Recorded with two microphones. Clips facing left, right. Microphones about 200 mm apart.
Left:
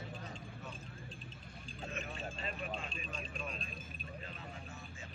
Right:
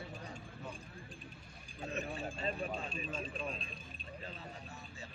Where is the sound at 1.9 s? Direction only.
35° right (ahead or behind).